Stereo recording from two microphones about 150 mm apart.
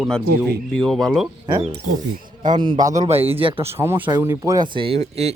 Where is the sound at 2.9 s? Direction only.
45° right (ahead or behind).